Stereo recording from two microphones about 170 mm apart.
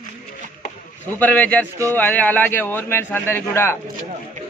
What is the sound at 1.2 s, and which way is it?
A man's voice, 10° left (ahead or behind).